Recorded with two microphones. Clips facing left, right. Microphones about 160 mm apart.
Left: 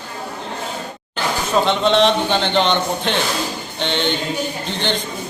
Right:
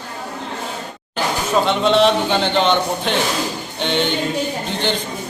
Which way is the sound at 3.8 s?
5° right (ahead or behind).